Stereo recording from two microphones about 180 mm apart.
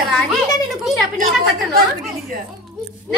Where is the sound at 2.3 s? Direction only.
55° right (ahead or behind).